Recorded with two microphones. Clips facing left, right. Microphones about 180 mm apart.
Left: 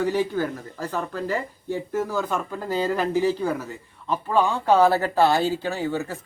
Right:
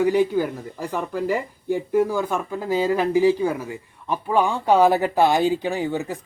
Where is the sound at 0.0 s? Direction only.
15° right (ahead or behind).